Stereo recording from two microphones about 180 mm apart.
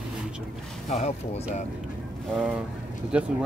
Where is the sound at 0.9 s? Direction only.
35° left (ahead or behind).